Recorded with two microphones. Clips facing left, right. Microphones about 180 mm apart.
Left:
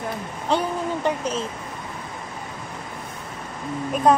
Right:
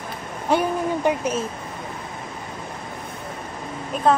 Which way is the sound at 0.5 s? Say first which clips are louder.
Right 3 dB; 10° right (ahead or behind).